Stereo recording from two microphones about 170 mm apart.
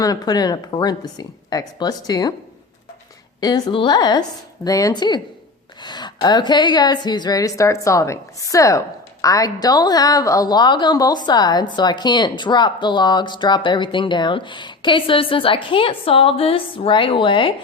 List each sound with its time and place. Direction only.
0.0 s a woman's voice: 20° left (ahead or behind)
3.4 s a woman's voice: 25° left (ahead or behind)